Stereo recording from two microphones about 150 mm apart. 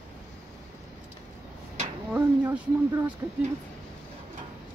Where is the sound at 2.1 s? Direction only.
10° right (ahead or behind).